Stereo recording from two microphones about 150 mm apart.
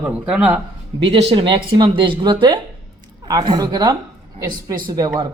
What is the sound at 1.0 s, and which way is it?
A woman's voice, 40° right (ahead or behind).